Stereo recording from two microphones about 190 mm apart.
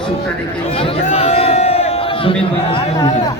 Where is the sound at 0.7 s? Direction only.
30° left (ahead or behind).